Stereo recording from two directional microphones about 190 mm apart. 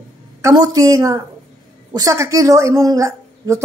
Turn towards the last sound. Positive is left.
turn(degrees=-15)  # may be behind; listen again after turning